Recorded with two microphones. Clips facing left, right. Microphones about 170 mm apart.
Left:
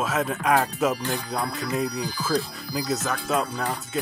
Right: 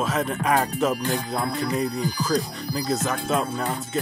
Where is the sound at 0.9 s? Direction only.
15° right (ahead or behind).